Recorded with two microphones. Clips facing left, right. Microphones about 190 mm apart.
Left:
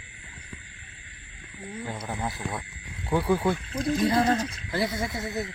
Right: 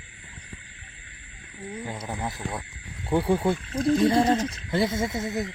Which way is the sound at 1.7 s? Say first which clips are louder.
Even; 10° right (ahead or behind).